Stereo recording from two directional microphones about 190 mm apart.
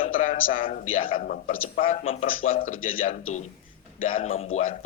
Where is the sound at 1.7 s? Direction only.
30° left (ahead or behind).